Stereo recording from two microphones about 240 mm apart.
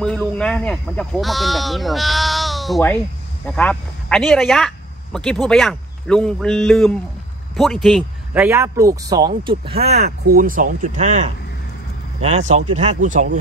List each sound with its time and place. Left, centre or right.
0.4 s speech: centre
10.0 s speech: right